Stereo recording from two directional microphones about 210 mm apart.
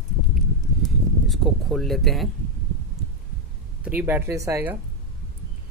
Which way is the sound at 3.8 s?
10° right (ahead or behind).